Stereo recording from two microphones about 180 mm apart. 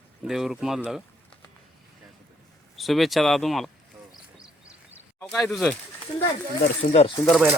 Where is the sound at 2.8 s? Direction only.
Centre (ahead or behind).